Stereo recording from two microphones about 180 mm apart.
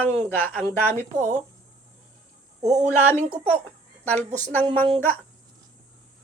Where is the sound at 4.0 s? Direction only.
5° left (ahead or behind).